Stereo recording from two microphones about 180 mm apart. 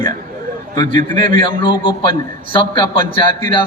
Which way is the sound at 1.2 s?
30° left (ahead or behind).